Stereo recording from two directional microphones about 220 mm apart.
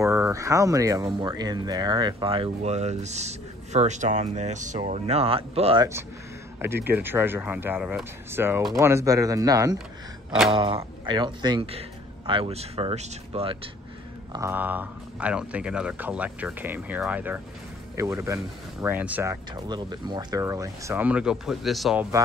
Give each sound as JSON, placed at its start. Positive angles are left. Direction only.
{"t": 0.0, "sound": "speech", "side_deg": -15}
{"t": 6.6, "sound": "speech", "side_deg": -10}
{"t": 14.3, "sound": "speech", "side_deg": -10}
{"t": 19.5, "sound": "speech", "side_deg": -20}